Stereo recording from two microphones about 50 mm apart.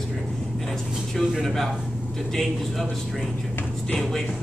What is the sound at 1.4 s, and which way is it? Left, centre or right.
Speech, centre.